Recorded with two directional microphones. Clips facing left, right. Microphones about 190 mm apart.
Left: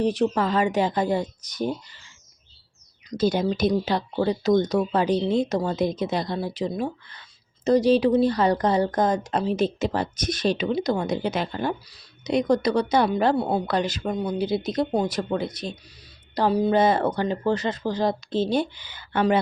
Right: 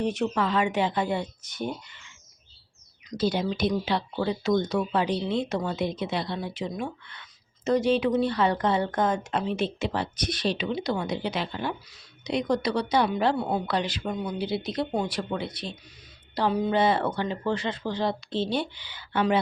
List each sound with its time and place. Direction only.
0.0 s speech: 35° left (ahead or behind)
3.1 s speech: 45° left (ahead or behind)